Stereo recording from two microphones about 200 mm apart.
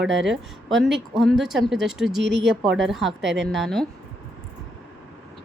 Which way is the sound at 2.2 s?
60° right (ahead or behind).